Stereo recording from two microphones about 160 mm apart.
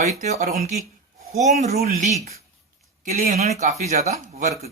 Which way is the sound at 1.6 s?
40° right (ahead or behind).